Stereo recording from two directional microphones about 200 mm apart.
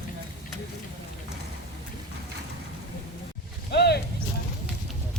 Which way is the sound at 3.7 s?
55° left (ahead or behind).